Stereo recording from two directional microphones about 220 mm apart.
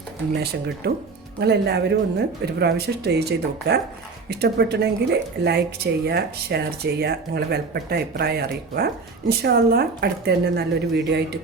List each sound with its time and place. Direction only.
0.3 s speech: 45° right (ahead or behind)